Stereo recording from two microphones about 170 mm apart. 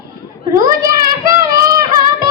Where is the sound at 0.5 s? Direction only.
20° right (ahead or behind).